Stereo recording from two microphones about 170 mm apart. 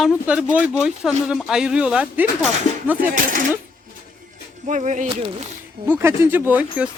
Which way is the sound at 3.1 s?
55° right (ahead or behind).